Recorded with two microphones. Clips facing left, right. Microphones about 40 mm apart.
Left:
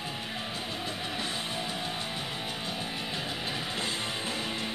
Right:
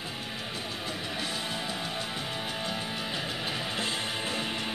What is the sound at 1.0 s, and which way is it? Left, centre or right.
Music, centre.